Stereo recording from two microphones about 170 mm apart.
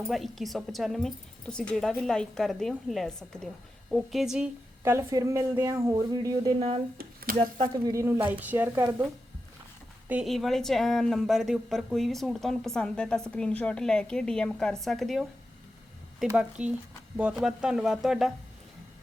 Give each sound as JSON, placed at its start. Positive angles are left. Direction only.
{"t": 0.1, "sound": "a woman's voice", "side_deg": 0}
{"t": 4.8, "sound": "speech", "side_deg": -15}
{"t": 6.6, "sound": "speech", "side_deg": -35}
{"t": 7.9, "sound": "speech", "side_deg": -15}
{"t": 10.1, "sound": "a woman's voice", "side_deg": 0}
{"t": 16.4, "sound": "a woman's voice", "side_deg": -5}